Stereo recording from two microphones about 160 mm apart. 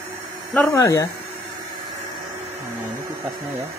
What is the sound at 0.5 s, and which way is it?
Speech, 10° left (ahead or behind).